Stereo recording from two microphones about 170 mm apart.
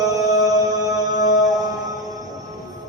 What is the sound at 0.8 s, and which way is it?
Mantra, 20° right (ahead or behind).